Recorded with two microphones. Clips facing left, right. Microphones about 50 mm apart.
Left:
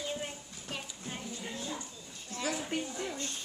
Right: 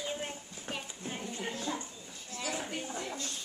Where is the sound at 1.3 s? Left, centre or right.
Right.